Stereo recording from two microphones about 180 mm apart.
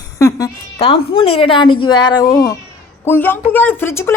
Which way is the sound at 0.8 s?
30° left (ahead or behind).